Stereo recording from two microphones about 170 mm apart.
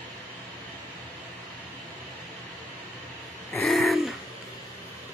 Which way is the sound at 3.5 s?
Centre (ahead or behind).